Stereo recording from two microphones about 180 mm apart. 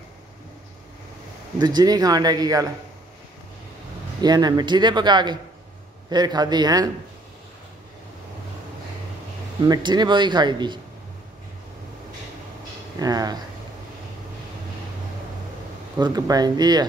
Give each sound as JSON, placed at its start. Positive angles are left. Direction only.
{"t": 1.6, "sound": "speech", "side_deg": -25}
{"t": 4.2, "sound": "speech", "side_deg": -20}
{"t": 9.6, "sound": "speech", "side_deg": -25}
{"t": 13.0, "sound": "speech", "side_deg": -20}
{"t": 16.0, "sound": "speech", "side_deg": -20}